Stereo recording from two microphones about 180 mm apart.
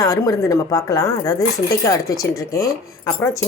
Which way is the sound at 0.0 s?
20° left (ahead or behind).